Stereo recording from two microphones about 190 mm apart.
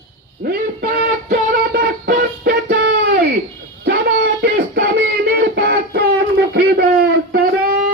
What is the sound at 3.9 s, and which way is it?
Music, 55° right (ahead or behind).